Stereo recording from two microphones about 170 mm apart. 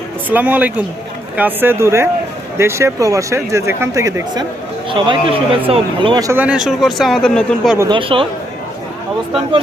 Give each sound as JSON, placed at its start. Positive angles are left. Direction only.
{"t": 0.3, "sound": "speech", "side_deg": -10}
{"t": 4.9, "sound": "speech", "side_deg": -30}
{"t": 6.4, "sound": "speech", "side_deg": -5}
{"t": 7.8, "sound": "speech", "side_deg": -30}